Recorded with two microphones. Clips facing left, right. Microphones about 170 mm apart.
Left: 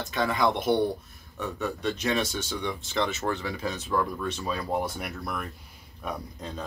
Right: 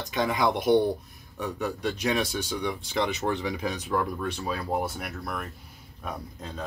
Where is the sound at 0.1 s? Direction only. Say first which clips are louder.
Even; 15° right (ahead or behind).